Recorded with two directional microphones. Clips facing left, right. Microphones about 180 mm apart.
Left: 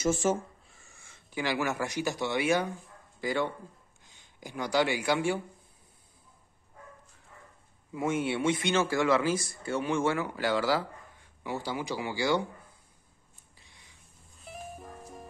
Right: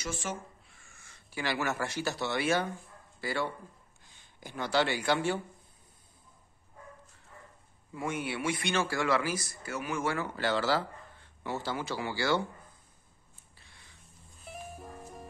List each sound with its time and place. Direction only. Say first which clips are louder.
0.2 s speech: left 10 dB; 40° left (ahead or behind)
0.8 s speech: left 2 dB; 15° left (ahead or behind)
7.9 s a man's voice: left 5 dB; 25° left (ahead or behind)
10.1 s speech: left 2 dB; 15° left (ahead or behind)
13.6 s a sound: even; 15° left (ahead or behind)
14.4 s music: left 1 dB; centre (ahead or behind)